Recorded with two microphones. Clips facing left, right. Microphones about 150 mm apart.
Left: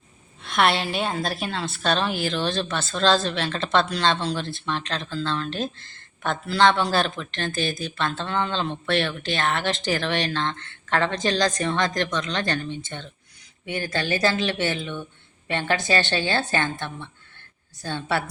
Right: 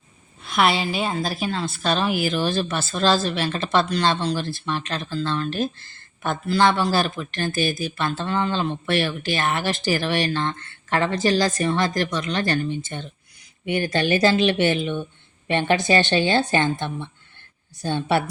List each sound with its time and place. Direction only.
0.4 s a woman's voice: centre (ahead or behind); by 18.2 s 15° right (ahead or behind)